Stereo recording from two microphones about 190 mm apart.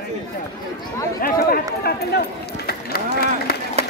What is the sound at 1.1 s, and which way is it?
Speech, 50° left (ahead or behind).